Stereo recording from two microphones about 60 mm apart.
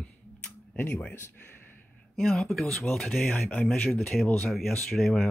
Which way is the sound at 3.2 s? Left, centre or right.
Left.